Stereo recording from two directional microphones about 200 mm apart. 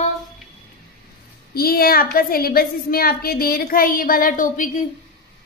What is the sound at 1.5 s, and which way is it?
A woman's voice, 50° left (ahead or behind).